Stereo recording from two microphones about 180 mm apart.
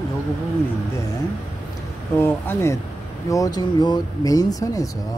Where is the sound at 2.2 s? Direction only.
15° left (ahead or behind).